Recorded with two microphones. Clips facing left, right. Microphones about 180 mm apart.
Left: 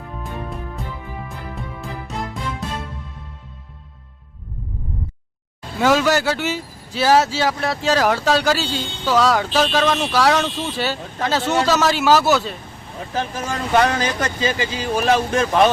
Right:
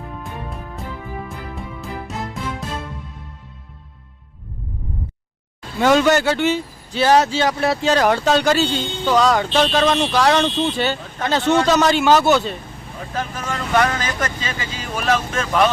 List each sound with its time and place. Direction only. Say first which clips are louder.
0.2 s music: left 2 dB; centre (ahead or behind)
5.8 s speech: right 2 dB; 5° left (ahead or behind)
13.1 s speech: left 2 dB; 30° left (ahead or behind)